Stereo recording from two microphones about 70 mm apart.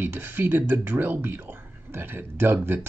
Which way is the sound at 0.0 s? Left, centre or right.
Right.